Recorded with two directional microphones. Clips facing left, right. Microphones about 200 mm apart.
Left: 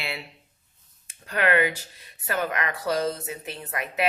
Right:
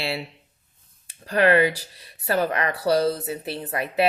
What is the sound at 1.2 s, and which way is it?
Speech, 35° right (ahead or behind).